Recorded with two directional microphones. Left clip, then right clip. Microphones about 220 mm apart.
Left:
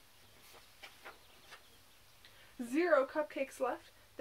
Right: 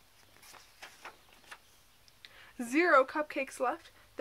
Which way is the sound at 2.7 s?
25° right (ahead or behind).